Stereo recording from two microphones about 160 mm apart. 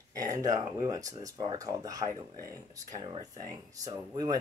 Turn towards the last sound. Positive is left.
turn(degrees=-25)  # may be behind; listen again after turning